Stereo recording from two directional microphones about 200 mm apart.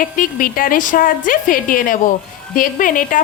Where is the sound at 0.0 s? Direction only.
45° left (ahead or behind).